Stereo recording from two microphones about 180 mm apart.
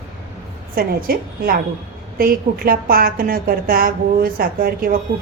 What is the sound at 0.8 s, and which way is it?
A woman's voice, 55° right (ahead or behind).